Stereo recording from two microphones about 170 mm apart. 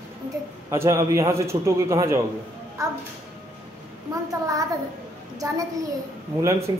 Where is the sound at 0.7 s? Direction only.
15° right (ahead or behind).